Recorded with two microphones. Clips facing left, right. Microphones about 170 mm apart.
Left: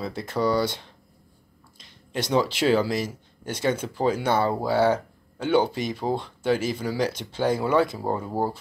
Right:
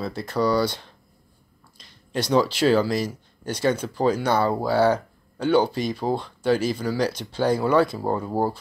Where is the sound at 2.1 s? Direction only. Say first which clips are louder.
Right 3 dB; 20° left (ahead or behind).